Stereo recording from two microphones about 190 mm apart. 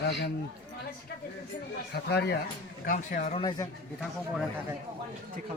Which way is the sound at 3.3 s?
25° left (ahead or behind).